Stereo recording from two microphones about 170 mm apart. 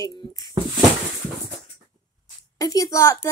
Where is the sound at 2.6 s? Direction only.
20° left (ahead or behind).